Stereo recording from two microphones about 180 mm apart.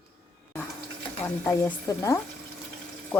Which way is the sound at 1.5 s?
15° left (ahead or behind).